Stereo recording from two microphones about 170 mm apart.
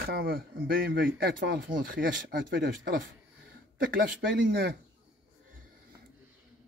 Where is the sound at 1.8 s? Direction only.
55° right (ahead or behind).